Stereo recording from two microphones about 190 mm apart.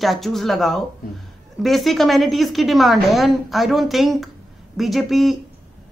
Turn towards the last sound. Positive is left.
turn(degrees=0)  # may be behind; listen again after turning